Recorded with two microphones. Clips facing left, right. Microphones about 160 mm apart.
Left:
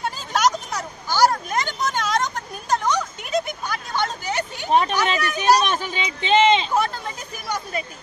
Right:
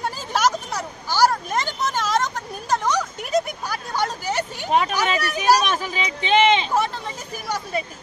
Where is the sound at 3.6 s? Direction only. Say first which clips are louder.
Even; 35° right (ahead or behind).